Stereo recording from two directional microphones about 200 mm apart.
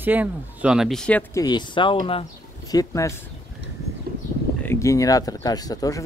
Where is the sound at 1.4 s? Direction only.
20° left (ahead or behind).